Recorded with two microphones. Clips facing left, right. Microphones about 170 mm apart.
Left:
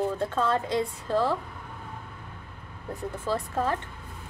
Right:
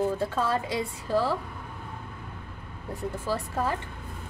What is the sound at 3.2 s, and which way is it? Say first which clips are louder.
Speech: left 2 dB; 10° right (ahead or behind).